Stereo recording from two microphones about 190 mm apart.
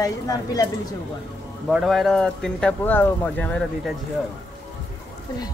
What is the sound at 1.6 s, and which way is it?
Speech, centre (ahead or behind).